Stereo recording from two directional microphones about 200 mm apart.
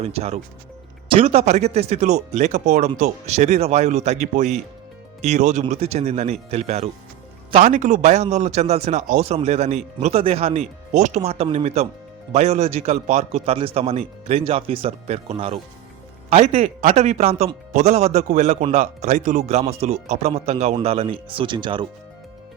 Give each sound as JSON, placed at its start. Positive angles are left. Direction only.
{"t": 0.0, "sound": "speech", "side_deg": -30}